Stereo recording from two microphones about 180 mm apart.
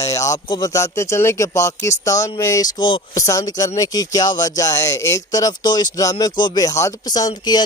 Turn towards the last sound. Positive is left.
turn(degrees=20)  # may be behind; listen again after turning